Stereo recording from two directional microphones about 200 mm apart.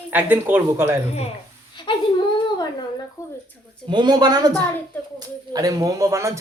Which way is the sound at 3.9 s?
20° right (ahead or behind).